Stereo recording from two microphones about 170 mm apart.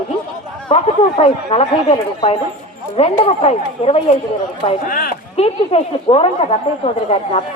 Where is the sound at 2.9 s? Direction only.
35° left (ahead or behind).